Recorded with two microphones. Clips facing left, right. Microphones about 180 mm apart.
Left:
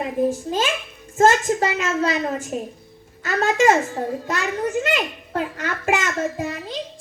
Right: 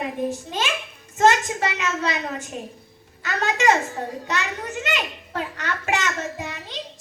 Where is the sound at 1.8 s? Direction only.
45° left (ahead or behind).